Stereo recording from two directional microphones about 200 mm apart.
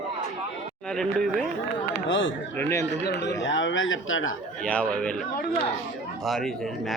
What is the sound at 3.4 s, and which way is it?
Speech, 70° left (ahead or behind).